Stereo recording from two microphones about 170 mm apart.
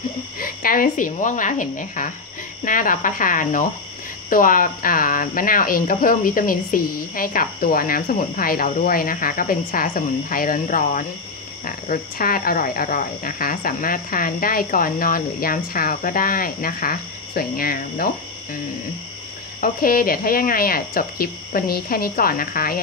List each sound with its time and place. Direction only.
0.4 s a woman's voice: 55° left (ahead or behind)
19.6 s speech: 55° left (ahead or behind)